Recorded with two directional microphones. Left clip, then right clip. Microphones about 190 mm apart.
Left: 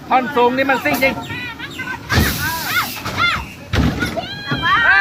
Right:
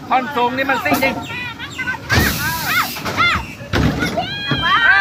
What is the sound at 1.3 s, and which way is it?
Bird, 10° right (ahead or behind).